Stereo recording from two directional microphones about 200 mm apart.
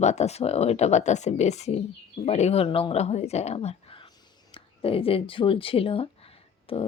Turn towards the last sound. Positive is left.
turn(degrees=30)  # may be behind; listen again after turning